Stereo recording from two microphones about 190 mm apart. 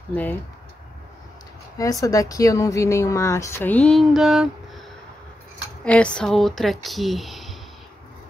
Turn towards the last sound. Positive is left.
turn(degrees=0)  # may be behind; listen again after turning